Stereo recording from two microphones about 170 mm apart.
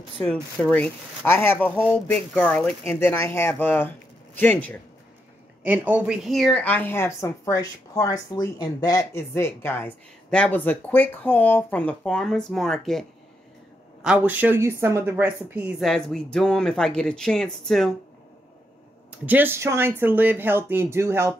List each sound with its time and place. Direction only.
0.2 s speech: 5° left (ahead or behind)
5.7 s speech: 10° right (ahead or behind)
14.0 s speech: 10° right (ahead or behind)
15.8 s speech: centre (ahead or behind)
19.2 s speech: 10° right (ahead or behind)